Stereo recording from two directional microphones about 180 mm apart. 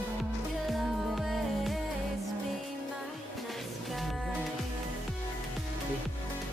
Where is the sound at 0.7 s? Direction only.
Centre (ahead or behind).